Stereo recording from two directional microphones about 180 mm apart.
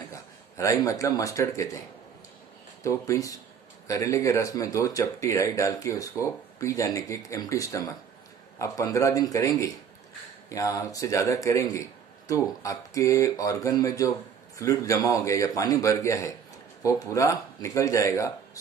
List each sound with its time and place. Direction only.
0.1 s speech: 15° left (ahead or behind)
2.8 s speech: 15° left (ahead or behind)